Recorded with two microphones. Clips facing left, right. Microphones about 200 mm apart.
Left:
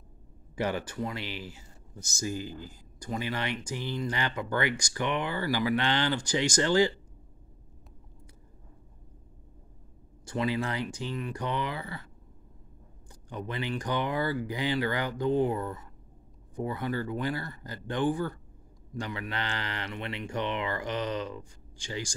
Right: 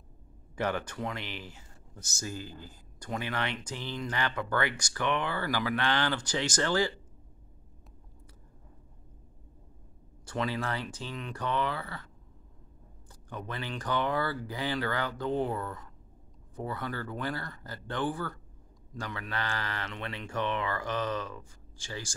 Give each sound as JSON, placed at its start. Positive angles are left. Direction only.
{"t": 0.6, "sound": "speech", "side_deg": 10}
{"t": 10.2, "sound": "speech", "side_deg": 15}
{"t": 13.1, "sound": "speech", "side_deg": 15}